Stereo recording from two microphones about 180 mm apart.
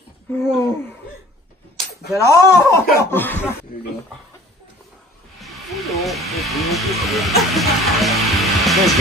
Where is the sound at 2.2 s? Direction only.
15° left (ahead or behind).